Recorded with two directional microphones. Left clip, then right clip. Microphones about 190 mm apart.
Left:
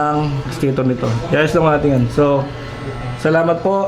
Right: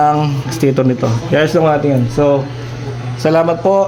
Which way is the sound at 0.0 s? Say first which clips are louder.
Right 5 dB; 30° right (ahead or behind).